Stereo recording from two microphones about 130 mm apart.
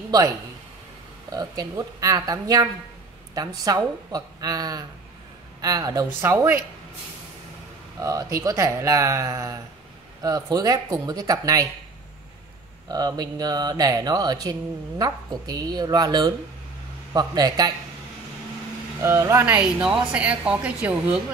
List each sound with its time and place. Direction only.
1.3 s speech: 30° right (ahead or behind)
6.2 s a woman's voice: 15° right (ahead or behind)
8.0 s speech: 25° right (ahead or behind)
12.8 s speech: 30° right (ahead or behind)
18.9 s a woman's voice: 20° right (ahead or behind)